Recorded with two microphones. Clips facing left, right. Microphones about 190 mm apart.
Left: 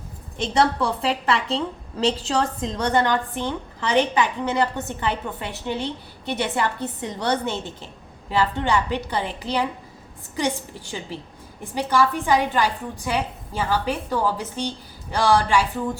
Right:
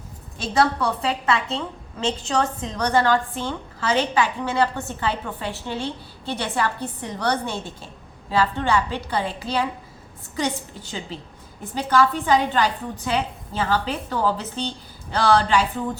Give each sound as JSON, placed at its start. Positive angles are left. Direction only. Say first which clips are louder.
{"t": 0.6, "sound": "a woman's voice", "louder": "even", "side_deg": 25}
{"t": 2.7, "sound": "a woman's voice", "louder": "right 2 dB", "side_deg": 20}